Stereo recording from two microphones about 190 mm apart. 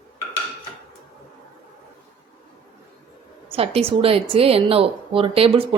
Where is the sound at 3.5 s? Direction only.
30° right (ahead or behind).